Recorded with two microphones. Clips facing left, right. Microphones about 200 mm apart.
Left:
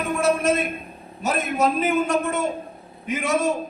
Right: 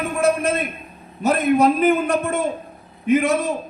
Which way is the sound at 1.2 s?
55° right (ahead or behind).